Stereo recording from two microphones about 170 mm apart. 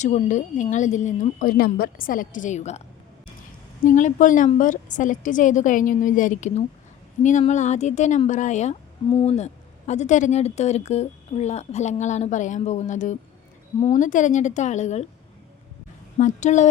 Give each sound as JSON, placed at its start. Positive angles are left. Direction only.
{"t": 0.0, "sound": "speech", "side_deg": 45}
{"t": 3.8, "sound": "a woman's voice", "side_deg": 50}
{"t": 16.1, "sound": "speech", "side_deg": 45}